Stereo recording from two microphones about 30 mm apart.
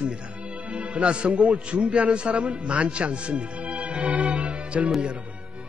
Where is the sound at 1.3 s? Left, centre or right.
Right.